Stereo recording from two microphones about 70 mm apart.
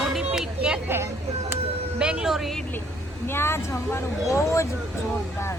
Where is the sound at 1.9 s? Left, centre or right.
Centre.